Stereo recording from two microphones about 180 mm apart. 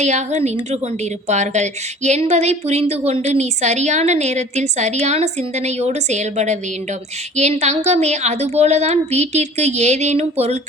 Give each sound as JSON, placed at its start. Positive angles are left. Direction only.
{"t": 0.0, "sound": "a woman's voice", "side_deg": -40}